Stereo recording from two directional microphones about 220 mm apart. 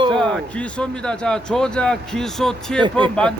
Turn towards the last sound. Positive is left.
turn(degrees=-20)  # may be behind; listen again after turning